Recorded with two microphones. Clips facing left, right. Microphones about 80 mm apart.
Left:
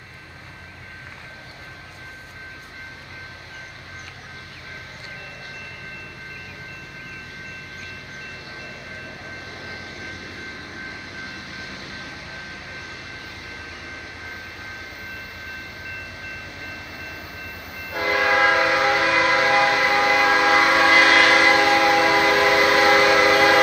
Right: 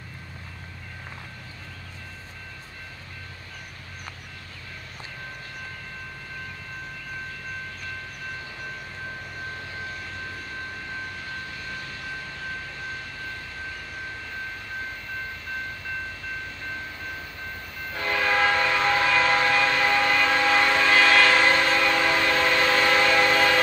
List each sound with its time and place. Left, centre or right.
9.5 s vehicle: left
11.3 s vehicle: centre
11.6 s vehicle: left
16.5 s train: left
18.2 s train: centre
20.7 s train: left
21.5 s train: centre